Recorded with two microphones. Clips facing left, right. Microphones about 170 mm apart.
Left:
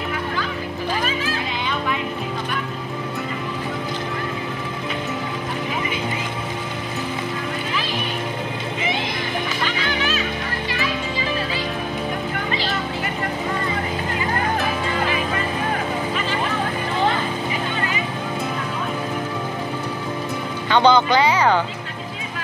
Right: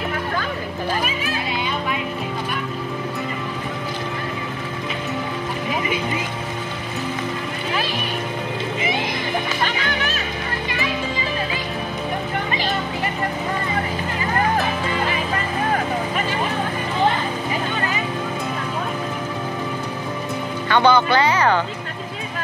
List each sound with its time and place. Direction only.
9.7 s music: 45° right (ahead or behind)
20.6 s music: 15° left (ahead or behind)